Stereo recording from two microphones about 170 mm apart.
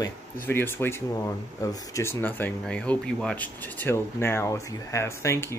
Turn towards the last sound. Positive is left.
turn(degrees=15)  # may be behind; listen again after turning